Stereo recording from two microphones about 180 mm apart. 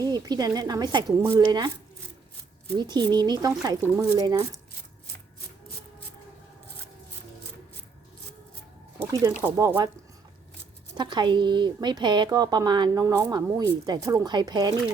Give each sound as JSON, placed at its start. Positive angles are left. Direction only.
{"t": 0.0, "sound": "a woman's voice", "side_deg": -20}
{"t": 2.7, "sound": "a woman's voice", "side_deg": -25}
{"t": 9.0, "sound": "a woman's voice", "side_deg": -20}
{"t": 10.9, "sound": "a woman's voice", "side_deg": -25}